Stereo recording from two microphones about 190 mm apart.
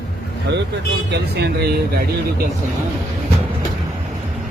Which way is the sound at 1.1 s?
60° right (ahead or behind).